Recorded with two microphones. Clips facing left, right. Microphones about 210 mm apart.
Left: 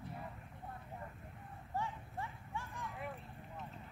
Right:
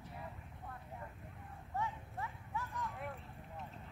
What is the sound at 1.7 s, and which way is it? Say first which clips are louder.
Horse: even; 30° left (ahead or behind).